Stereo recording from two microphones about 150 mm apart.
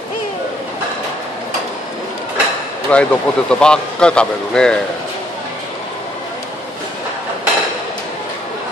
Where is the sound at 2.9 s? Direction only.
5° left (ahead or behind).